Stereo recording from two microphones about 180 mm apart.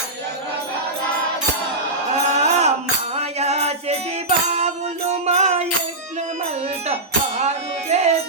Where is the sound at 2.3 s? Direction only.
40° right (ahead or behind).